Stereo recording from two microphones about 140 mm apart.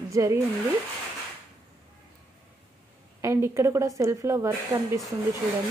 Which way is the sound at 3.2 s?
20° right (ahead or behind).